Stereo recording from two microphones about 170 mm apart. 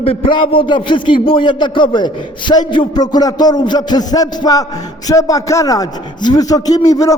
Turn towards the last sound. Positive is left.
turn(degrees=20)  # may be behind; listen again after turning